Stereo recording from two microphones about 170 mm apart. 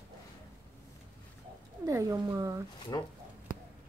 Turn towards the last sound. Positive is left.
turn(degrees=20)  # may be behind; listen again after turning